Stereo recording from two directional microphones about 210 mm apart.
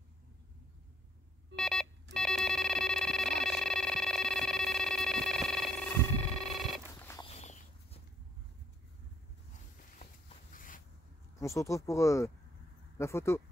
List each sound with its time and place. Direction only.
1.5 s telephone dialing: centre (ahead or behind)
2.1 s a sound: centre (ahead or behind)
6.3 s telephone: centre (ahead or behind)
7.0 s walk: 10° left (ahead or behind)
7.2 s walk: 30° left (ahead or behind)
10.5 s a sound: 40° left (ahead or behind)
11.3 s speech: 15° left (ahead or behind)